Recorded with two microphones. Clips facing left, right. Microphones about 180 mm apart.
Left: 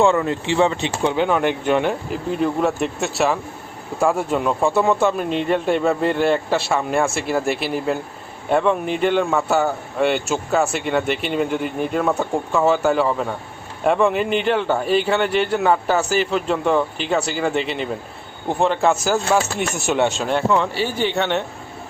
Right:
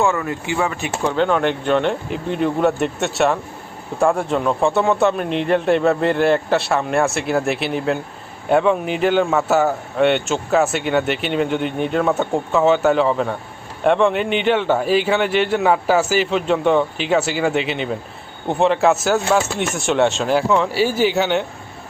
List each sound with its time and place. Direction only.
0.0 s speech: 25° left (ahead or behind)
1.1 s speech: 10° left (ahead or behind)